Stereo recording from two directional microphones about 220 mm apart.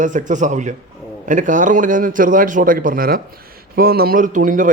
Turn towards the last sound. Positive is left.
turn(degrees=-40)  # may be behind; listen again after turning